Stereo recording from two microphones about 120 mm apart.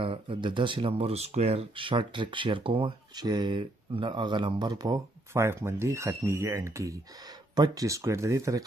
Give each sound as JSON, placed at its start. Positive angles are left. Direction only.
{"t": 0.0, "sound": "speech", "side_deg": -45}